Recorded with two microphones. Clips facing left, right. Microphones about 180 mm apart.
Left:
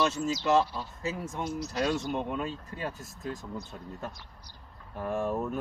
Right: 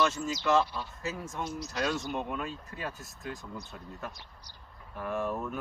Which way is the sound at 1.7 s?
30° left (ahead or behind).